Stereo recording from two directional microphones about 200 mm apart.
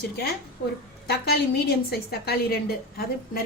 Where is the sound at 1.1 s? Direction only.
50° left (ahead or behind).